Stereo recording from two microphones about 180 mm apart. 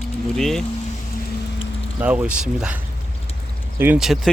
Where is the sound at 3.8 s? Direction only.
5° right (ahead or behind).